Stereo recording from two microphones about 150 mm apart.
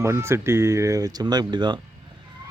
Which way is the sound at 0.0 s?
20° right (ahead or behind).